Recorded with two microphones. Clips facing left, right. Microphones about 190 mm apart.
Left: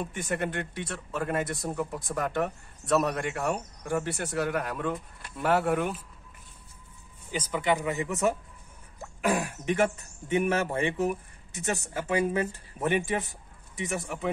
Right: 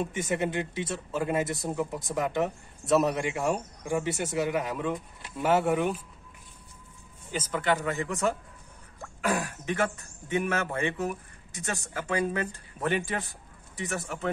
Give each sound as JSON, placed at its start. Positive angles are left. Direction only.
{"t": 0.0, "sound": "speech", "side_deg": 0}
{"t": 7.3, "sound": "speech", "side_deg": 5}
{"t": 7.9, "sound": "a man's voice", "side_deg": 15}
{"t": 9.0, "sound": "cough", "side_deg": 10}
{"t": 9.5, "sound": "speech", "side_deg": 25}
{"t": 14.0, "sound": "speech", "side_deg": 0}